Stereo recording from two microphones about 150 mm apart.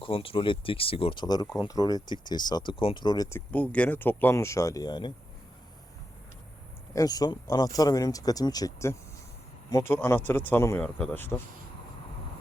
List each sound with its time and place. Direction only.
0.0 s speech: 35° left (ahead or behind)
6.9 s speech: 25° left (ahead or behind)